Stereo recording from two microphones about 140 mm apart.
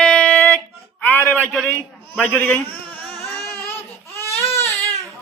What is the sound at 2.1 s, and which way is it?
Speech, 10° left (ahead or behind).